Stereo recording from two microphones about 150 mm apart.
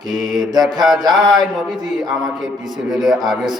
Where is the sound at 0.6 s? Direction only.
Centre (ahead or behind).